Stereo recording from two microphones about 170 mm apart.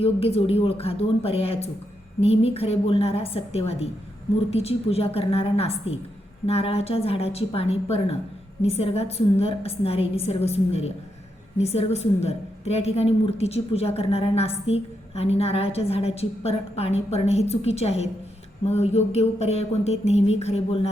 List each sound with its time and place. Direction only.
0.0 s a woman's voice: 35° left (ahead or behind)